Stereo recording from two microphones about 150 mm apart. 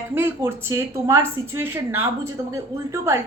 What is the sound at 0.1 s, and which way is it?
Speech, 15° right (ahead or behind).